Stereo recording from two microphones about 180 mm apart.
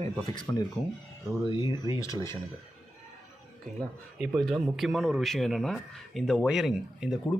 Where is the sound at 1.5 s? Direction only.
25° left (ahead or behind).